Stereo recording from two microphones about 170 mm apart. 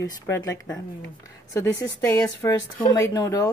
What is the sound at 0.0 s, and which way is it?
Speech, 20° left (ahead or behind).